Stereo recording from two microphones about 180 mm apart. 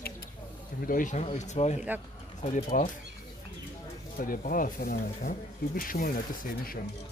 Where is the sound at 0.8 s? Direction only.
45° left (ahead or behind).